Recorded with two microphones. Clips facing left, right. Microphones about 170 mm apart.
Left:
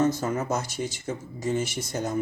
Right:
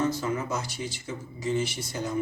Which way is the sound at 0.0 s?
45° left (ahead or behind).